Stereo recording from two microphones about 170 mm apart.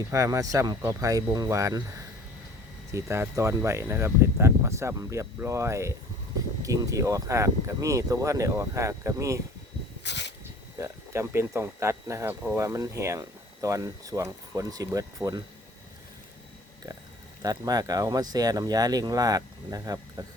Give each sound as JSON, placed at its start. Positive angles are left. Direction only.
{"t": 0.1, "sound": "speech", "side_deg": -20}
{"t": 2.9, "sound": "speech", "side_deg": -15}
{"t": 10.0, "sound": "a sound", "side_deg": 90}
{"t": 10.8, "sound": "speech", "side_deg": -15}
{"t": 17.4, "sound": "speech", "side_deg": -20}